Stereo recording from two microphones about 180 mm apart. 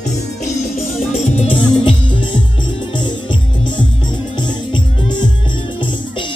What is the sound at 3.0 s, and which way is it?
Music, 25° left (ahead or behind).